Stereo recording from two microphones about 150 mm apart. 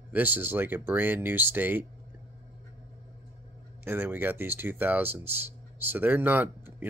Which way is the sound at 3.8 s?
15° right (ahead or behind).